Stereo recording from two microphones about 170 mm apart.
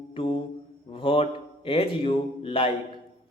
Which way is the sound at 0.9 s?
30° left (ahead or behind).